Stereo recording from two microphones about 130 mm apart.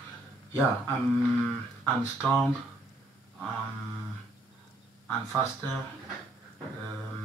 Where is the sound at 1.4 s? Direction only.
5° left (ahead or behind).